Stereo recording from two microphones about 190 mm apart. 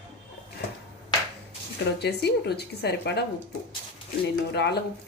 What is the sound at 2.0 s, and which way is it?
Speech, 60° left (ahead or behind).